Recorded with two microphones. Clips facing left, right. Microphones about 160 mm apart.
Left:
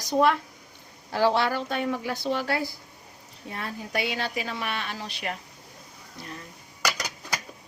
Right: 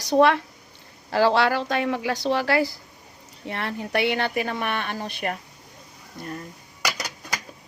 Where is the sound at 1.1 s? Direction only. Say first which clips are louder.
Right 4 dB; 90° right.